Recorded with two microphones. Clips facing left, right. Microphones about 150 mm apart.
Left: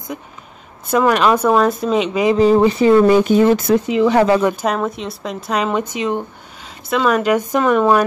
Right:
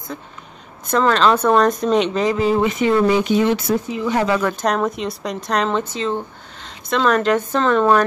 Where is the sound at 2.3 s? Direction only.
35° left (ahead or behind).